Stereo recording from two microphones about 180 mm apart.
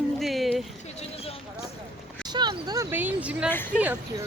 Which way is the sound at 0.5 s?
35° left (ahead or behind).